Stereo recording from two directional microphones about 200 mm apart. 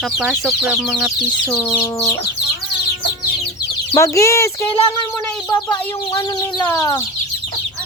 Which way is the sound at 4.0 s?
15° left (ahead or behind).